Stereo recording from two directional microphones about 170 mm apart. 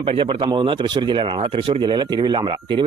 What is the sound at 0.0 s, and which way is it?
Speech, 30° right (ahead or behind).